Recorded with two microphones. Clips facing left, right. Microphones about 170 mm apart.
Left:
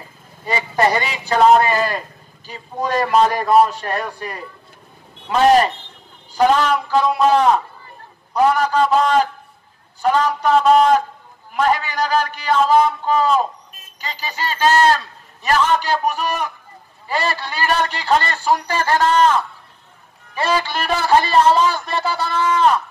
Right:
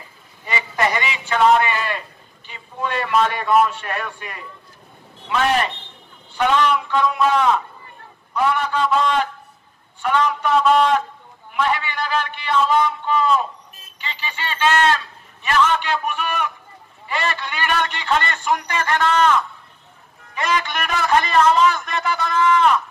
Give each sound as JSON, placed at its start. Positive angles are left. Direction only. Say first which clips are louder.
{"t": 0.5, "sound": "a man's voice", "louder": "left 4 dB", "side_deg": 35}